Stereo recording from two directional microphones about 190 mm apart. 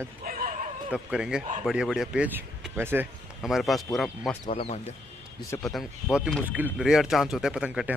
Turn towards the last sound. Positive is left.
turn(degrees=-5)  # may be behind; listen again after turning